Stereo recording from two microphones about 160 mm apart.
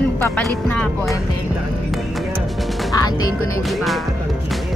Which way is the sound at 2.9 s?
25° left (ahead or behind).